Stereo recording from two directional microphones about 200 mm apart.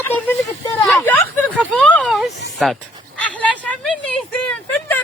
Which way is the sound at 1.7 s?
Centre (ahead or behind).